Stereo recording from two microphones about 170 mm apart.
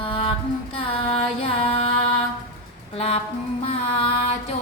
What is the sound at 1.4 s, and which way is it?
Female singing, 35° left (ahead or behind).